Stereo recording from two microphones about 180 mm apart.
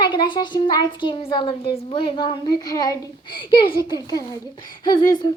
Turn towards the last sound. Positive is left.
turn(degrees=25)  # may be behind; listen again after turning